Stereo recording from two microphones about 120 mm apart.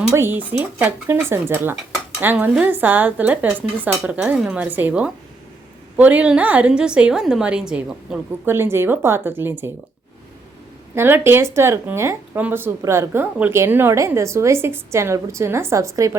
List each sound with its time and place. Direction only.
0.1 s speech: 20° right (ahead or behind)
8.4 s speech: 20° right (ahead or behind)
10.9 s speech: 20° right (ahead or behind)